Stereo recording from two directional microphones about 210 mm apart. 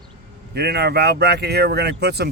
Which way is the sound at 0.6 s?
50° right (ahead or behind).